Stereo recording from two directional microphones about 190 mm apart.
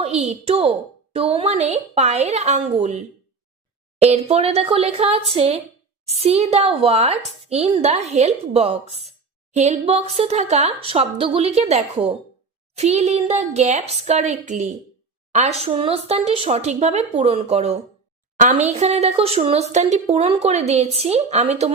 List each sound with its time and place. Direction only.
0.0 s speech: 35° right (ahead or behind)
4.0 s speech: 35° right (ahead or behind)